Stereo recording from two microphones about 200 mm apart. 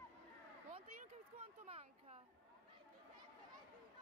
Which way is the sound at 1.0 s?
30° right (ahead or behind).